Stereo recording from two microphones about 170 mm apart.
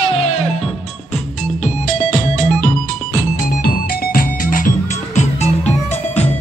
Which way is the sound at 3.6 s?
60° left (ahead or behind).